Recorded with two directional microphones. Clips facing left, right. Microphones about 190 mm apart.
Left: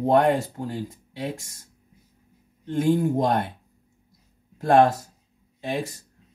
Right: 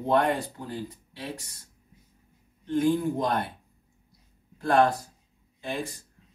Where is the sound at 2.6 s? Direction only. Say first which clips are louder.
Left 2 dB; 50° left (ahead or behind).